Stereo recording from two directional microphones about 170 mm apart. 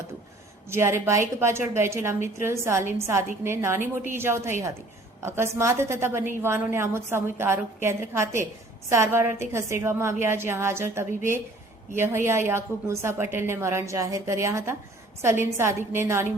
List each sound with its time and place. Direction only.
0.7 s a woman's voice: 15° right (ahead or behind)